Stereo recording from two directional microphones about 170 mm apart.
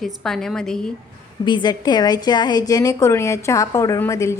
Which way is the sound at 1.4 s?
25° left (ahead or behind).